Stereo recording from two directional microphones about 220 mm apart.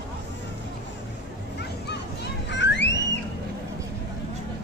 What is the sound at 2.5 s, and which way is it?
Car alarm, 55° left (ahead or behind).